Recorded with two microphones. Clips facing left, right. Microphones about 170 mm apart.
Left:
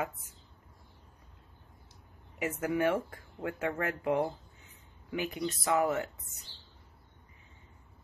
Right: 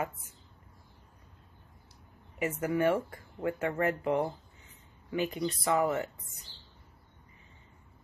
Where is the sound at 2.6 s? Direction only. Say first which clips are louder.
Right 1 dB; 15° left (ahead or behind).